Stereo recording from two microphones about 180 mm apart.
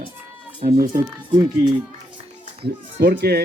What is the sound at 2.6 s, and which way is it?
Speech, 65° right (ahead or behind).